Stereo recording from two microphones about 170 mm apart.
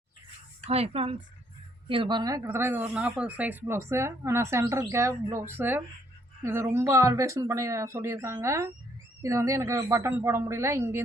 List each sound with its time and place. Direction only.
0.6 s speech: 35° right (ahead or behind); by 11.0 s 15° right (ahead or behind)